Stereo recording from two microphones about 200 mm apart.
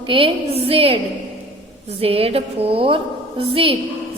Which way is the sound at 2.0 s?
30° right (ahead or behind).